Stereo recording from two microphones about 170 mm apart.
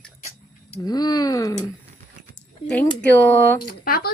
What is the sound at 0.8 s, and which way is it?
Speech, 25° left (ahead or behind).